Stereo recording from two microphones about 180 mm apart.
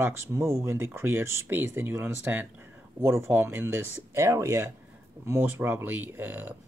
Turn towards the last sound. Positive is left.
turn(degrees=-10)  # may be behind; listen again after turning